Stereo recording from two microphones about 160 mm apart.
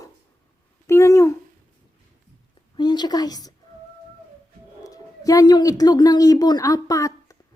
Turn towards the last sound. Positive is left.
turn(degrees=20)  # may be behind; listen again after turning